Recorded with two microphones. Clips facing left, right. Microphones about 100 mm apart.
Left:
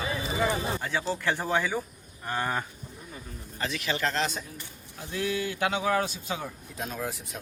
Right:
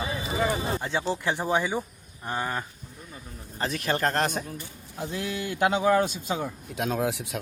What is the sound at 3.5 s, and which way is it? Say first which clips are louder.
Speech: right 3 dB; 40° right (ahead or behind).